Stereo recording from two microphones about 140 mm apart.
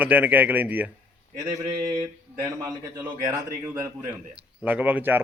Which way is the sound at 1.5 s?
25° right (ahead or behind).